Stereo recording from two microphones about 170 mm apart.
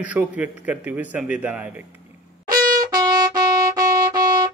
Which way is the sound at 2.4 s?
60° right (ahead or behind).